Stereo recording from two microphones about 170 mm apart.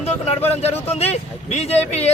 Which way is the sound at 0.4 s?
40° left (ahead or behind).